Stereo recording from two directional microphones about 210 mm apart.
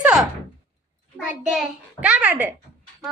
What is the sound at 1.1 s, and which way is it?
A child's voice, centre (ahead or behind).